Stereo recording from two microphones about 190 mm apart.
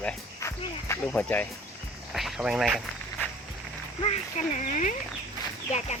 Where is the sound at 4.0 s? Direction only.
35° left (ahead or behind).